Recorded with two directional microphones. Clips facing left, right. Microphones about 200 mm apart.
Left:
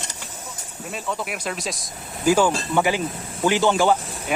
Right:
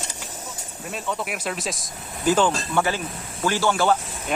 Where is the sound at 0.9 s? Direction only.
Centre (ahead or behind).